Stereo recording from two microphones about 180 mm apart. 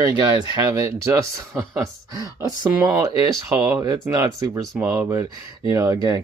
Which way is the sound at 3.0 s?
20° right (ahead or behind).